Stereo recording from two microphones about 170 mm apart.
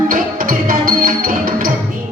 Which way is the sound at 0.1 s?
55° right (ahead or behind).